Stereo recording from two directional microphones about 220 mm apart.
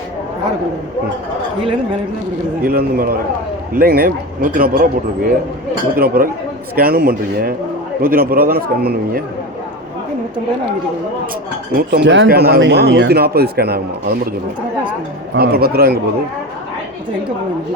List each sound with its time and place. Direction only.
2.6 s speech: 40° right (ahead or behind)
11.8 s speech: 45° right (ahead or behind)
15.4 s speech: 45° right (ahead or behind)